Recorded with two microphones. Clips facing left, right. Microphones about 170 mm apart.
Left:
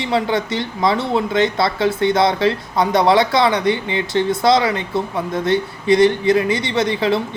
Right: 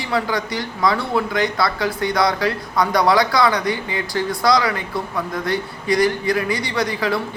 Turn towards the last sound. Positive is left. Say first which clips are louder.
# left 4 dB
turn(degrees=25)  # may be behind; listen again after turning